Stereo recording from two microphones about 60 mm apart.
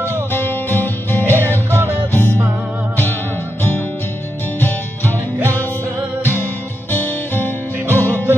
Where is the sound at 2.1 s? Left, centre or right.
Left.